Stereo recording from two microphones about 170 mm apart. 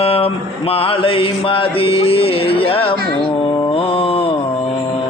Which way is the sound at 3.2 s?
25° left (ahead or behind).